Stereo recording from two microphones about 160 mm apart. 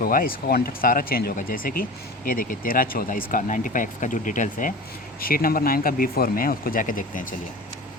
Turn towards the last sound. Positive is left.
turn(degrees=55)  # may be behind; listen again after turning